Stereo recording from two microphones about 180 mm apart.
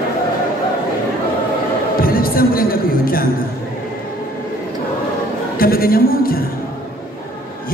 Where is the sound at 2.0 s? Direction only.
55° left (ahead or behind).